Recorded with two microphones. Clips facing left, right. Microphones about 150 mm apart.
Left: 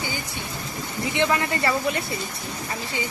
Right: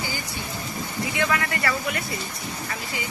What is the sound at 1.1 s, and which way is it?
Speech, 25° left (ahead or behind).